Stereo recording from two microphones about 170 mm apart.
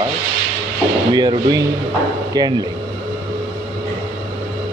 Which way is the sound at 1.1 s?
25° right (ahead or behind).